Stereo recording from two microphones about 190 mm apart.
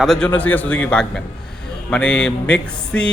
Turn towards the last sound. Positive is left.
turn(degrees=5)  # may be behind; listen again after turning